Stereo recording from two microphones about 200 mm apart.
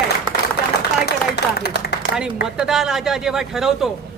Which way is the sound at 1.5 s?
55° left (ahead or behind).